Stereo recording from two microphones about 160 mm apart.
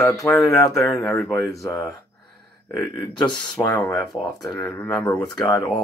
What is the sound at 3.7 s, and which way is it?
Speech, 20° left (ahead or behind).